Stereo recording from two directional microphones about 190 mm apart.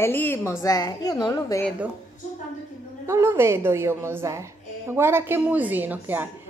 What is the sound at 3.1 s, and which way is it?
A woman's voice, 15° right (ahead or behind).